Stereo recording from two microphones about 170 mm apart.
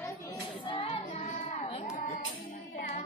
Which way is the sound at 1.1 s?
40° left (ahead or behind).